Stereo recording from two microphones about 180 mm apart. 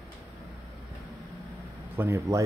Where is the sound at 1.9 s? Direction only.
15° right (ahead or behind).